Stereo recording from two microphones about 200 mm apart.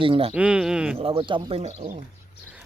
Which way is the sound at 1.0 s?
25° right (ahead or behind).